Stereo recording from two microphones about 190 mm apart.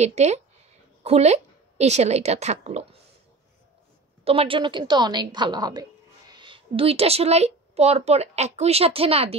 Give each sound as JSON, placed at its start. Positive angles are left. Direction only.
{"t": 0.0, "sound": "a woman's voice", "side_deg": -35}
{"t": 4.2, "sound": "a woman's voice", "side_deg": -30}